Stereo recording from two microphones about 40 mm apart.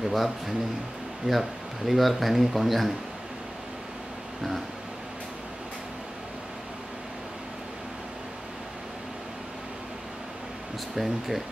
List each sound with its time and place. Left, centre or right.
0.1 s speech: centre
4.4 s speech: centre
11.0 s speech: centre